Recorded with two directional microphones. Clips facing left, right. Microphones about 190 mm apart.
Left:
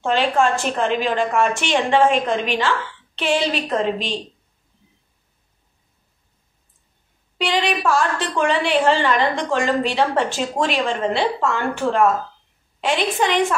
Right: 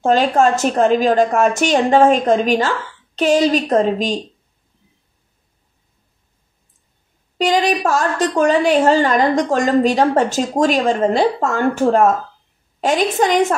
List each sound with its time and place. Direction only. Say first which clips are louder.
0.0 s a woman's voice: right 5 dB; 40° right (ahead or behind)
7.3 s a woman's voice: right 5 dB; 40° right (ahead or behind)